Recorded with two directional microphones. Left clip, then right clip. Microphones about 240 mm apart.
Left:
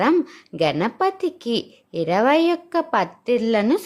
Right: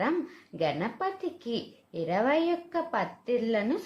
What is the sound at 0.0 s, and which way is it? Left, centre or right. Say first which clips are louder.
Speech: left 11 dB; left.